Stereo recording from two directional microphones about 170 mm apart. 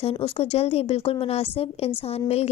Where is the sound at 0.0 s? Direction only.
35° left (ahead or behind).